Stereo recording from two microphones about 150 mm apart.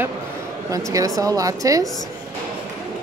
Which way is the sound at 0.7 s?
20° right (ahead or behind).